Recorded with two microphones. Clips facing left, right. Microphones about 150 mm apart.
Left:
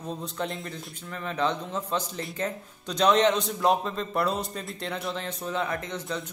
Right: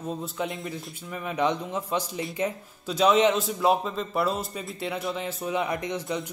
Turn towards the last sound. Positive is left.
turn(degrees=-10)  # may be behind; listen again after turning